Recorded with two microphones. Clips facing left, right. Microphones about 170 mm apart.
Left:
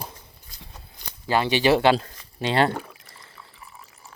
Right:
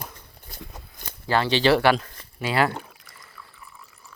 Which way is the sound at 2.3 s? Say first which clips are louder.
Left 1 dB; 30° left (ahead or behind).